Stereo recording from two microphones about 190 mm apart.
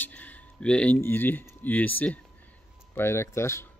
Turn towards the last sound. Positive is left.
turn(degrees=15)  # may be behind; listen again after turning